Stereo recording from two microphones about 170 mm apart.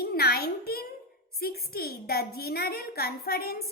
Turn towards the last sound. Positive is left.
turn(degrees=65)  # may be behind; listen again after turning